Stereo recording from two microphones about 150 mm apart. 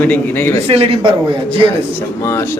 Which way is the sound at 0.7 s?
40° right (ahead or behind).